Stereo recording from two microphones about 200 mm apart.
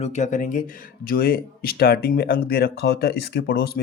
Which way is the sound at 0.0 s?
35° left (ahead or behind).